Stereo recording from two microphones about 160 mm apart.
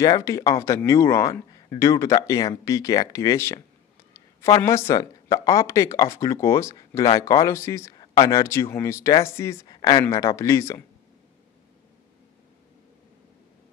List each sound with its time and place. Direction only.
0.0 s speech: 20° left (ahead or behind)